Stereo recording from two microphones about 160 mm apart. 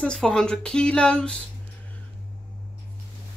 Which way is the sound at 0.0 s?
5° left (ahead or behind).